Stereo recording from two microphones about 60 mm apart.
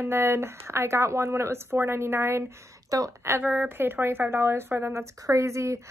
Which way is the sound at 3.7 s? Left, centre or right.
Right.